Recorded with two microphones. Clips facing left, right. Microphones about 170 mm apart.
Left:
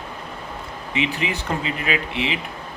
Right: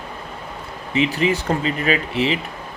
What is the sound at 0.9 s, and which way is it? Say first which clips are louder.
Speech: right 6 dB; 40° right (ahead or behind).